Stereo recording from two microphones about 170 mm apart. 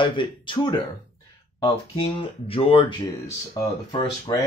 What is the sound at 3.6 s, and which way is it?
Speech, 20° left (ahead or behind).